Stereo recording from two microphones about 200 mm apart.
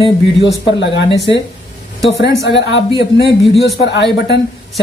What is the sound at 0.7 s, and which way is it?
Speech, 60° left (ahead or behind).